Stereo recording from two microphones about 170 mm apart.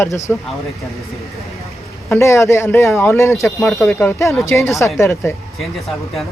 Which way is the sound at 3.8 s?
15° left (ahead or behind).